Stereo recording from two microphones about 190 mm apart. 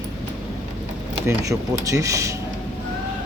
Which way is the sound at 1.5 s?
15° right (ahead or behind).